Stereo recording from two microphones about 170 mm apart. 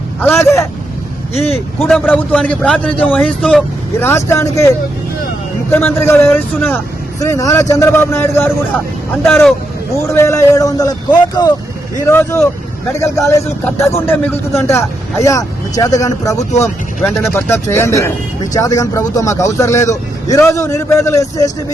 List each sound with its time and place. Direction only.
0.2 s speech: 15° left (ahead or behind)
1.3 s speech: 35° left (ahead or behind)
1.8 s speech: 10° left (ahead or behind)
5.7 s speech: 15° left (ahead or behind)
13.7 s speech: 15° left (ahead or behind)
17.0 s speech: centre (ahead or behind)
17.5 s speech: 15° left (ahead or behind)